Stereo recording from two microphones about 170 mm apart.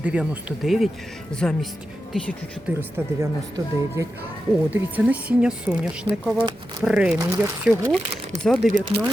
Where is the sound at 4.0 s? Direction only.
20° right (ahead or behind).